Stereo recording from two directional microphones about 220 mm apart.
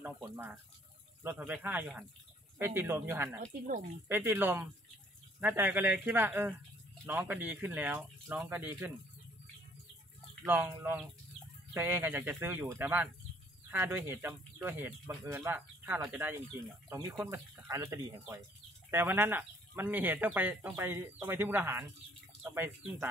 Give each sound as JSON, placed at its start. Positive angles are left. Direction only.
{"t": 0.0, "sound": "speech", "side_deg": -10}
{"t": 10.4, "sound": "speech", "side_deg": -10}